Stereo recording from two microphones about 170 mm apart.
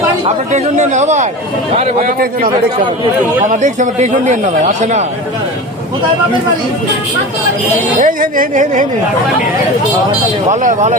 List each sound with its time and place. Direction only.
0.5 s speech: 45° right (ahead or behind)
2.0 s a man's voice: 55° right (ahead or behind)
3.5 s speech: 45° right (ahead or behind)
8.0 s speech: 50° right (ahead or behind)
10.5 s speech: 45° right (ahead or behind)